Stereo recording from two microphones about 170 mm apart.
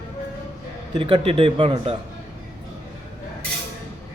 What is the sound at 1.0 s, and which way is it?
Speech, 30° right (ahead or behind).